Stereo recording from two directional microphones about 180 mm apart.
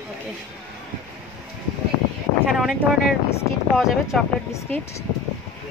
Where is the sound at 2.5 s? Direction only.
Centre (ahead or behind).